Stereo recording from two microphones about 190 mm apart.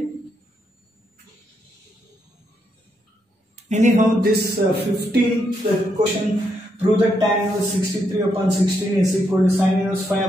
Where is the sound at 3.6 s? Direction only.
40° right (ahead or behind).